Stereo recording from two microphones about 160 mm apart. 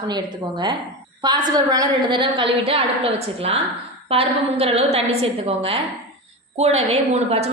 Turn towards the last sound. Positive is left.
turn(degrees=-40)  # may be behind; listen again after turning